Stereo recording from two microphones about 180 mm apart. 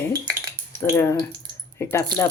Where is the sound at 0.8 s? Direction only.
10° left (ahead or behind).